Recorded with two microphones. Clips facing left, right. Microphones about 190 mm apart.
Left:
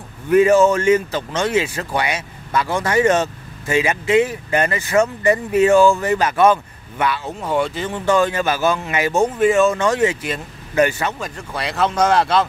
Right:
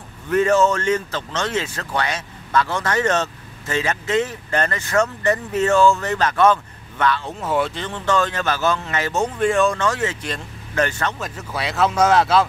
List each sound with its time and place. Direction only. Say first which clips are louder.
0.3 s speech: left 4 dB; 10° left (ahead or behind)
7.8 s speech: left 4 dB; 10° left (ahead or behind)
9.8 s speech: left 5 dB; 15° left (ahead or behind)
11.1 s speech: left 1 dB; 5° right (ahead or behind)